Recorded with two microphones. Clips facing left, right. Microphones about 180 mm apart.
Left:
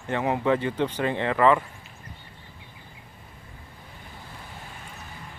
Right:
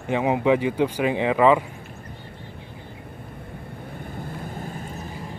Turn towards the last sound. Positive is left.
turn(degrees=-40)  # may be behind; listen again after turning